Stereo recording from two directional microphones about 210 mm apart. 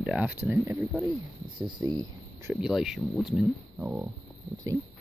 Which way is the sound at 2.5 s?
Centre (ahead or behind).